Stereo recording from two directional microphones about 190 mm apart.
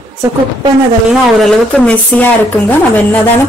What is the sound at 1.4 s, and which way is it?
Speech, 5° left (ahead or behind).